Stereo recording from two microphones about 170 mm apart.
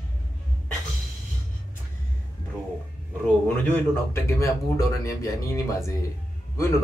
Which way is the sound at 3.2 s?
10° left (ahead or behind).